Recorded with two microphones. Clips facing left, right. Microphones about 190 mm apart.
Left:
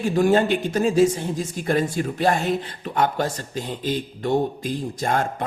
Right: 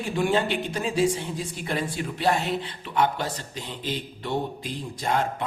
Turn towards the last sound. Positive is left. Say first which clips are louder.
# left 3 dB
turn(degrees=45)  # may be behind; listen again after turning